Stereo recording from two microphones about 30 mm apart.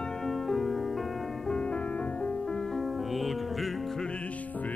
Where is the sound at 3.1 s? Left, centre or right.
Centre.